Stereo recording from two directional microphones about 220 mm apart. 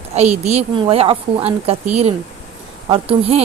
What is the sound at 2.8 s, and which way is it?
Speech, 25° right (ahead or behind).